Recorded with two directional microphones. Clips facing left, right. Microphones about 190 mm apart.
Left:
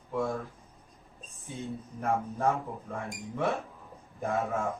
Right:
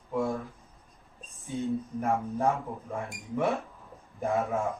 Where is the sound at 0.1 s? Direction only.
15° right (ahead or behind).